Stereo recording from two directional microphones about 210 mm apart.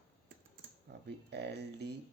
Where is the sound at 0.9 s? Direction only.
50° right (ahead or behind).